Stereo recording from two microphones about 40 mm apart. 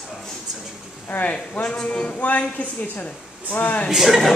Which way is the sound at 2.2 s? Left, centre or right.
Left.